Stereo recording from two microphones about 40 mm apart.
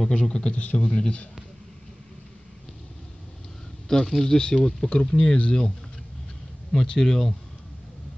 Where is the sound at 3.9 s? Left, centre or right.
Centre.